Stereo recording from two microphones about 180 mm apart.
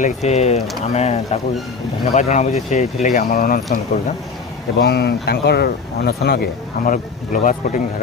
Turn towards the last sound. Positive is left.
turn(degrees=45)  # may be behind; listen again after turning